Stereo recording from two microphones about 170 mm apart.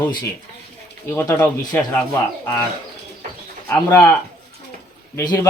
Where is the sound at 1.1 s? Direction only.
10° left (ahead or behind).